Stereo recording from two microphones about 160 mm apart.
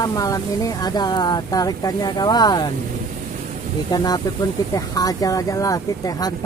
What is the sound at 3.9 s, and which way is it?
Speech, 25° left (ahead or behind).